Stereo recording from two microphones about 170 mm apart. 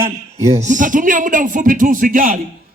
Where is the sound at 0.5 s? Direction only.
50° right (ahead or behind).